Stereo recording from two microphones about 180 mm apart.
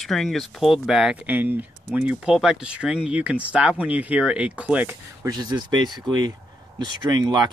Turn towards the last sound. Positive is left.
turn(degrees=-25)  # may be behind; listen again after turning